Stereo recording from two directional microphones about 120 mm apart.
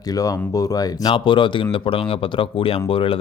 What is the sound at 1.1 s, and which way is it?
Speech, 45° left (ahead or behind).